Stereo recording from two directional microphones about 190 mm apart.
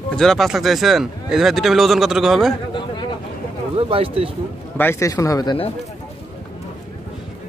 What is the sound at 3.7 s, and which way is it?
Speech, 30° right (ahead or behind).